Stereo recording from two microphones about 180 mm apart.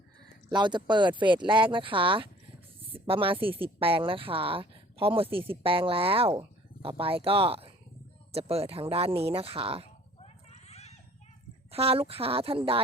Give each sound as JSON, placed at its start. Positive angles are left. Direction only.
{"t": 0.5, "sound": "a woman's voice", "side_deg": -25}
{"t": 10.2, "sound": "a sound", "side_deg": 35}
{"t": 11.7, "sound": "a woman's voice", "side_deg": -30}